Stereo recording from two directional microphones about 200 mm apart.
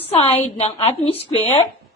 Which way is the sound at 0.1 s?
30° left (ahead or behind).